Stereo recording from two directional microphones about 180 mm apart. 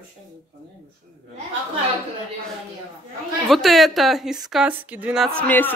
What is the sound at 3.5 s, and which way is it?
Speech, centre (ahead or behind).